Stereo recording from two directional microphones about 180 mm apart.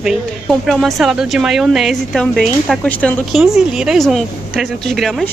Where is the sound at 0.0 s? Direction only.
Centre (ahead or behind).